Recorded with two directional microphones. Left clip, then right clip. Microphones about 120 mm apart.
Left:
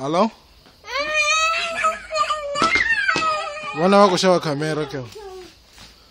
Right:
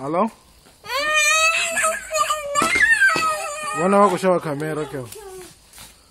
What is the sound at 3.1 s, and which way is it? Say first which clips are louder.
Dog: even; 25° right (ahead or behind).